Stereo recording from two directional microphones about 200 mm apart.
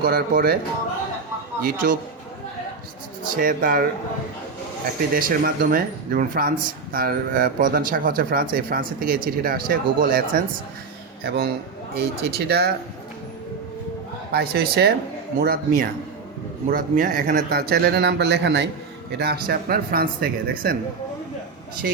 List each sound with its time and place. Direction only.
0.0 s speech: 45° right (ahead or behind)
1.6 s speech: 45° right (ahead or behind)
3.3 s speech: 45° right (ahead or behind)
5.1 s speech: 45° right (ahead or behind)
14.3 s speech: 50° right (ahead or behind)